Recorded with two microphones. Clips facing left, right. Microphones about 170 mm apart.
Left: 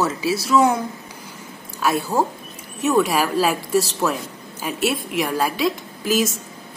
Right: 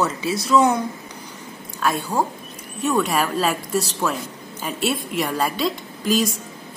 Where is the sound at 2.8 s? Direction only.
Centre (ahead or behind).